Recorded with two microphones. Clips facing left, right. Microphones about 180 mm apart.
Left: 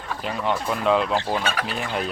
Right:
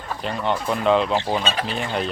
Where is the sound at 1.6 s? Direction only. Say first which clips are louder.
Right 2 dB; 5° left (ahead or behind).